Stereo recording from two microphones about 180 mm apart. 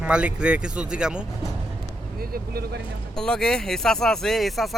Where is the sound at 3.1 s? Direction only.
5° left (ahead or behind).